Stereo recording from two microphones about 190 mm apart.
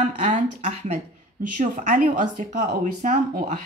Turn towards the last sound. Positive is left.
turn(degrees=-40)  # may be behind; listen again after turning